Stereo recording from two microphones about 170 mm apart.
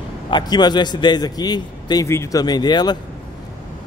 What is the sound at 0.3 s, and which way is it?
A man's voice, 25° left (ahead or behind).